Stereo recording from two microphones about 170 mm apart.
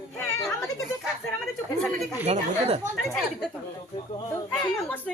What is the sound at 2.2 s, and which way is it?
Speech, 40° right (ahead or behind).